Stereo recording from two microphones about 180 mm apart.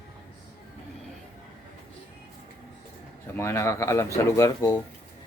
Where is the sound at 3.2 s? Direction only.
15° left (ahead or behind).